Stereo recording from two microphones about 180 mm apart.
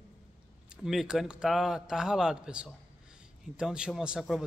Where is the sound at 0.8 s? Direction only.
Centre (ahead or behind).